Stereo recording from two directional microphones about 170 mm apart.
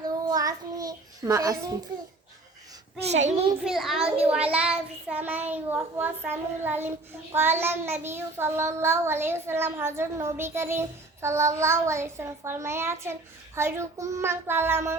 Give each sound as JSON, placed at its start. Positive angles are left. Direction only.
{"t": 0.0, "sound": "child singing", "side_deg": -20}
{"t": 3.0, "sound": "a child's voice", "side_deg": -40}
{"t": 3.6, "sound": "a child's voice", "side_deg": 0}
{"t": 4.5, "sound": "child singing", "side_deg": -5}